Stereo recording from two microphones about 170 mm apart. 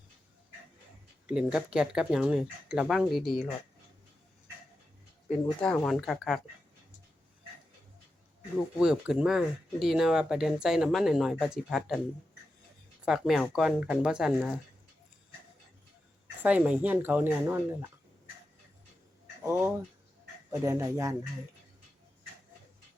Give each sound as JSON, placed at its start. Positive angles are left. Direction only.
{"t": 1.3, "sound": "speech", "side_deg": -5}
{"t": 5.3, "sound": "speech", "side_deg": 10}
{"t": 8.8, "sound": "speech", "side_deg": -5}
{"t": 13.1, "sound": "speech", "side_deg": 0}
{"t": 16.4, "sound": "speech", "side_deg": -10}
{"t": 19.4, "sound": "speech", "side_deg": -15}